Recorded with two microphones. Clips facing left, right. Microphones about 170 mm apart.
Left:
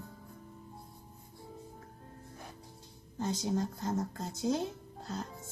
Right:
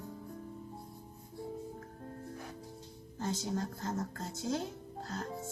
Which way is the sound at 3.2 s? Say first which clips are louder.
Left 3 dB; 20° left (ahead or behind).